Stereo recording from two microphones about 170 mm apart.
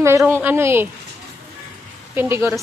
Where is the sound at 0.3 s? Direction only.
10° right (ahead or behind).